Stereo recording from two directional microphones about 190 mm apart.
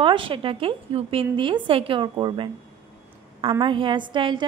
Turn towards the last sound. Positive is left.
turn(degrees=-25)  # may be behind; listen again after turning